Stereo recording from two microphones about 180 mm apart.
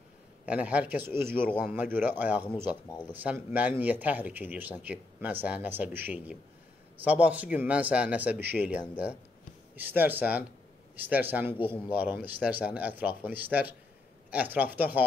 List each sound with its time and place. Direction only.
0.5 s speech: 5° right (ahead or behind)